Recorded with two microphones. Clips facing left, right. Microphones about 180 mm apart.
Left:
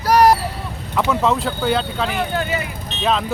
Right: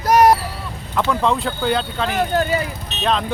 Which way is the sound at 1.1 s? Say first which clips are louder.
Left 1 dB; centre (ahead or behind).